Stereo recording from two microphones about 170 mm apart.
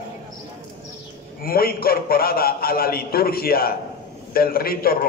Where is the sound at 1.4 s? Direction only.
60° left (ahead or behind).